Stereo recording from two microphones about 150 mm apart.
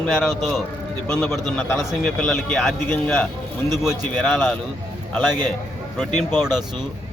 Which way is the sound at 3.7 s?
Centre (ahead or behind).